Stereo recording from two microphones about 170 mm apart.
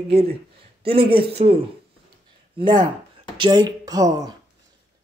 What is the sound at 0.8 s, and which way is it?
Speech, 30° right (ahead or behind).